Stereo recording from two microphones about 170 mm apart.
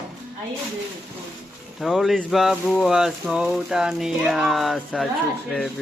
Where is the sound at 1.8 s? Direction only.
Centre (ahead or behind).